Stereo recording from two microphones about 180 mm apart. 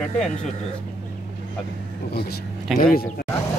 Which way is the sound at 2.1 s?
60° left (ahead or behind).